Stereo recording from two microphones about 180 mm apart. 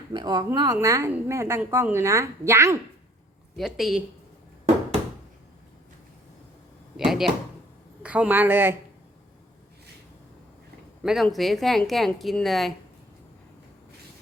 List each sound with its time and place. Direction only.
0.1 s a woman's voice: 25° right (ahead or behind)
3.6 s speech: centre (ahead or behind)
6.9 s a sound: centre (ahead or behind)
8.0 s a woman's voice: 5° right (ahead or behind)
11.0 s speech: centre (ahead or behind)